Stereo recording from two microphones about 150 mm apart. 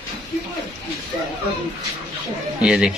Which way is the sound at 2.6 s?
5° right (ahead or behind).